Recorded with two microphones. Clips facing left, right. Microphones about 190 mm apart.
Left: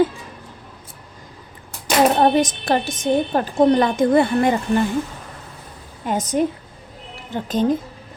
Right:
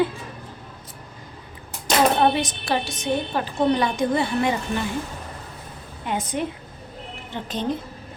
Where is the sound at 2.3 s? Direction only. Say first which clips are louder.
Left 6 dB; 45° left (ahead or behind).